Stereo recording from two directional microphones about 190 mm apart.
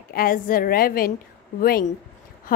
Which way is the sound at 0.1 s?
50° left (ahead or behind).